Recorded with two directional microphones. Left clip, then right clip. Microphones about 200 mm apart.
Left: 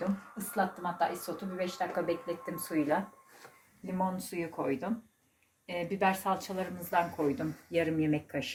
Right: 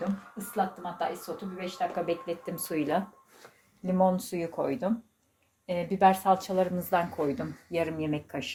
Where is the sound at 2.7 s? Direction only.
50° right (ahead or behind).